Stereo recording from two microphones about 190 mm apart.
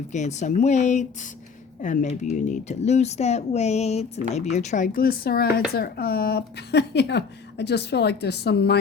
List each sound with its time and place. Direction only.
0.1 s speech: 40° left (ahead or behind); by 8.8 s 60° left (ahead or behind)